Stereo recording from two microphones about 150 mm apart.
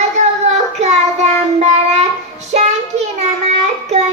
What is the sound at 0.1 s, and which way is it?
Child singing, 50° right (ahead or behind).